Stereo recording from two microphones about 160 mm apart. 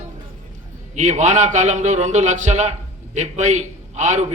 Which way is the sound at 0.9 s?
50° right (ahead or behind).